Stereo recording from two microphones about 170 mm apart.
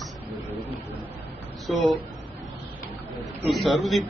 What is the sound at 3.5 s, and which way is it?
Speech, centre (ahead or behind).